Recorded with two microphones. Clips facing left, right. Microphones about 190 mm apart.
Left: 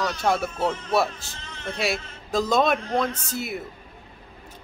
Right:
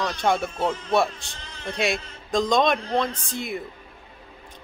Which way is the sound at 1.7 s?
5° left (ahead or behind).